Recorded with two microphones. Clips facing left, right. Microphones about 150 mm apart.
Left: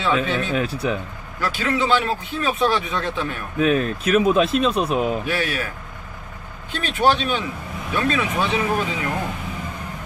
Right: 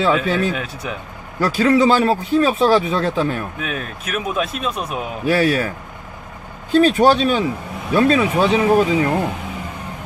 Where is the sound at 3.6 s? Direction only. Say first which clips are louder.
Left 8 dB; 35° left (ahead or behind).